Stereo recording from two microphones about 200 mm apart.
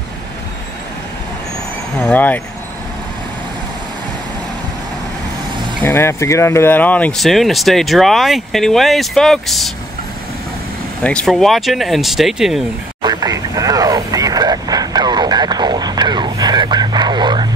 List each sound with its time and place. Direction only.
2.0 s speech: 10° left (ahead or behind)
5.9 s speech: 10° left (ahead or behind)
11.1 s speech: 5° left (ahead or behind)
13.0 s vehicle: 20° right (ahead or behind)